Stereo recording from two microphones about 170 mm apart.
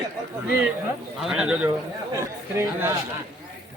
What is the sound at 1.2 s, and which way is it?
Speech, 5° right (ahead or behind).